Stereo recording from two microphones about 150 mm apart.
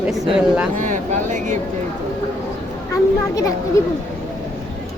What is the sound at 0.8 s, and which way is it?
Speech, 55° right (ahead or behind).